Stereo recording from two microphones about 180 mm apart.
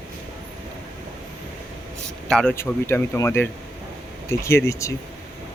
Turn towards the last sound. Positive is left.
turn(degrees=15)  # may be behind; listen again after turning